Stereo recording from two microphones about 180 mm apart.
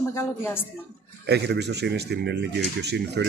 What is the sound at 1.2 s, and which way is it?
Speech, 70° right (ahead or behind).